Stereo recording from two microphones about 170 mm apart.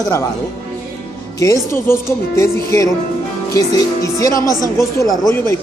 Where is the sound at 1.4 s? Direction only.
20° left (ahead or behind).